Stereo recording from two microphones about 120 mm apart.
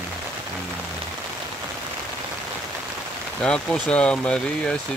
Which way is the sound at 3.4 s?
5° left (ahead or behind).